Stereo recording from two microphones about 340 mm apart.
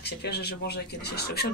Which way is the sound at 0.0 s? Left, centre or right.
Left.